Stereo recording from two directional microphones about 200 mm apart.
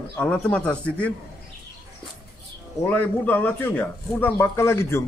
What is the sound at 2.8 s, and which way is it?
A man's voice, 10° left (ahead or behind).